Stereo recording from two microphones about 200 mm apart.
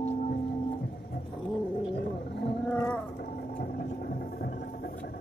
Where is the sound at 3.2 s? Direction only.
50° left (ahead or behind).